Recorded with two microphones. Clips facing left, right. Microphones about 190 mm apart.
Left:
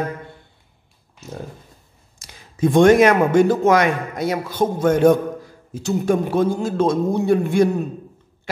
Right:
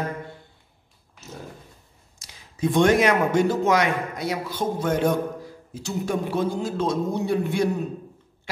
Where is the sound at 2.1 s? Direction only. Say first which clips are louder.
Left 6 dB; 50° left (ahead or behind).